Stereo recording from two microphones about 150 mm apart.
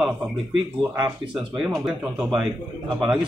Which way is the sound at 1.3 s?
5° right (ahead or behind).